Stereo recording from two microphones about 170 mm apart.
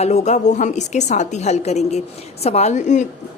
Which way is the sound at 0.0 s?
40° left (ahead or behind).